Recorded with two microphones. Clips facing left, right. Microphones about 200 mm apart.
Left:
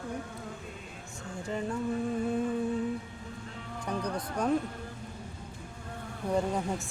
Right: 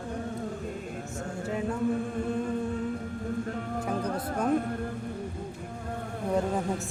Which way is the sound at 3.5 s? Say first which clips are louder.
Right 6 dB; 50° right (ahead or behind).